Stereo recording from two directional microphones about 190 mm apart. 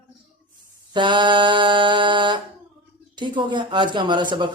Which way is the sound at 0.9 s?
25° right (ahead or behind).